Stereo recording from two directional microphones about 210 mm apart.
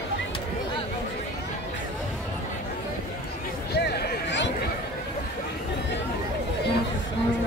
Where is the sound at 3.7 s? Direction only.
55° left (ahead or behind).